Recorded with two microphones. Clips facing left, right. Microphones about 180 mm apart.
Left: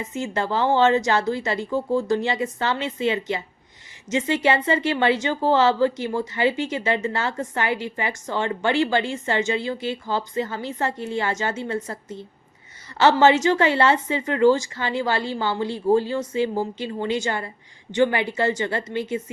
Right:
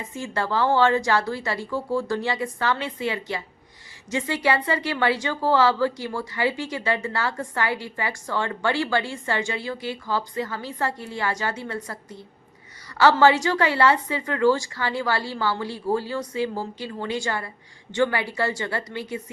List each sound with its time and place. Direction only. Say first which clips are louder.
0.0 s a woman's voice: left 3 dB; 20° left (ahead or behind)